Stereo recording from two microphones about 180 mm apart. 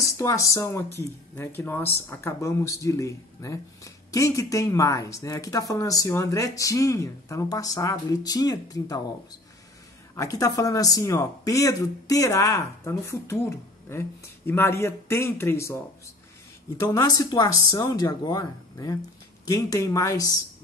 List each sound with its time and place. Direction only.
0.0 s speech: 15° left (ahead or behind)
10.1 s speech: 15° left (ahead or behind)